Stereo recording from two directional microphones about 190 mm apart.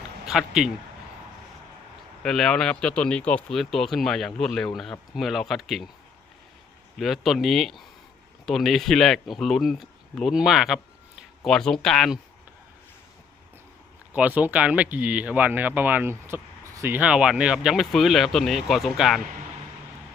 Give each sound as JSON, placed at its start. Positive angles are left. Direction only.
{"t": 0.3, "sound": "speech", "side_deg": 0}
{"t": 2.2, "sound": "speech", "side_deg": 0}
{"t": 7.0, "sound": "speech", "side_deg": 0}
{"t": 14.1, "sound": "speech", "side_deg": -10}